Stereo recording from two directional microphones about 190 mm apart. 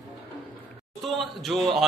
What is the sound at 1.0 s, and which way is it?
Speech, centre (ahead or behind).